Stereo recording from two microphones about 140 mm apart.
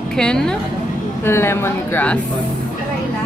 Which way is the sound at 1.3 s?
15° left (ahead or behind).